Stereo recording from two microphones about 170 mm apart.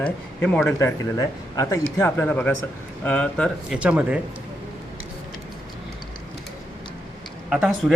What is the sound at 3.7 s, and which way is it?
Speech, 5° right (ahead or behind).